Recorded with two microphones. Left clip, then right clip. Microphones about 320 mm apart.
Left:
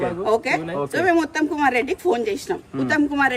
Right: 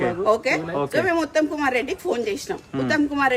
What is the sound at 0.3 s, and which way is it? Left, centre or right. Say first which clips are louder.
A woman's voice: left 1 dB; centre.